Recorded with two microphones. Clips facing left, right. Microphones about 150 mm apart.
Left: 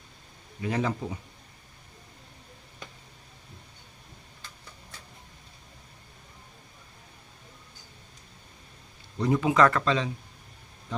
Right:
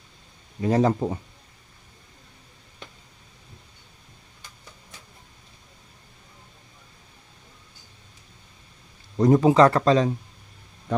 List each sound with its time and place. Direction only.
0.6 s speech: 40° right (ahead or behind)
9.1 s speech: 40° right (ahead or behind)